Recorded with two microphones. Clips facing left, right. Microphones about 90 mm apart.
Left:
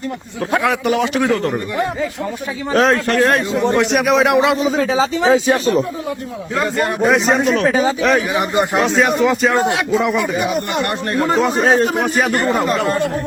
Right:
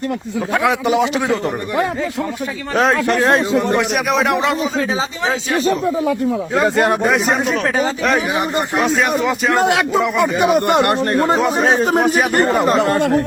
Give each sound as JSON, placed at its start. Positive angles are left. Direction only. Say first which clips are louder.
{"t": 0.6, "sound": "a man's voice", "louder": "right 3 dB", "side_deg": -20}
{"t": 2.7, "sound": "speech", "louder": "left 1 dB", "side_deg": -5}
{"t": 3.1, "sound": "a man's voice", "louder": "even", "side_deg": -20}
{"t": 3.9, "sound": "speech", "louder": "left 3 dB", "side_deg": 0}
{"t": 4.8, "sound": "a man's voice", "louder": "left 4 dB", "side_deg": 35}
{"t": 5.2, "sound": "speech", "louder": "left 8 dB", "side_deg": 20}
{"t": 6.7, "sound": "speech", "louder": "right 4 dB", "side_deg": -75}
{"t": 7.0, "sound": "speech", "louder": "left 2 dB", "side_deg": 0}
{"t": 10.3, "sound": "speech", "louder": "right 5 dB", "side_deg": -70}
{"t": 11.3, "sound": "speech", "louder": "left 1 dB", "side_deg": -5}
{"t": 12.6, "sound": "a man's voice", "louder": "right 3 dB", "side_deg": -20}
{"t": 12.9, "sound": "speech", "louder": "right 3 dB", "side_deg": -70}